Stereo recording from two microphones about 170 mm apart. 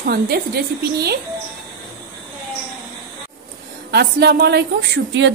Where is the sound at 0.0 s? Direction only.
65° right (ahead or behind).